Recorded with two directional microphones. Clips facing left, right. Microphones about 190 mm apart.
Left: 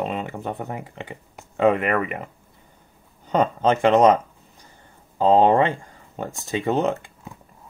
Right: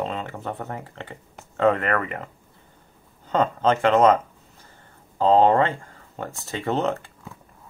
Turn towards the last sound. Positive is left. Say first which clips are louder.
# left 2 dB
turn(degrees=15)  # may be behind; listen again after turning